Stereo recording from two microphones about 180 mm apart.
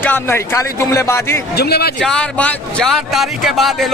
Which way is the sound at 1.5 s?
60° left (ahead or behind).